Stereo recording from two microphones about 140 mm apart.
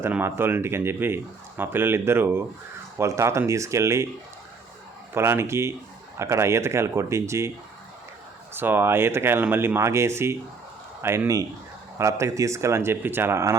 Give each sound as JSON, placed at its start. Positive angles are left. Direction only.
{"t": 0.0, "sound": "speech", "side_deg": -15}
{"t": 5.1, "sound": "speech", "side_deg": -15}
{"t": 8.5, "sound": "speech", "side_deg": -15}